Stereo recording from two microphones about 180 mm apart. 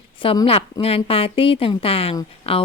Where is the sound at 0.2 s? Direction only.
30° left (ahead or behind).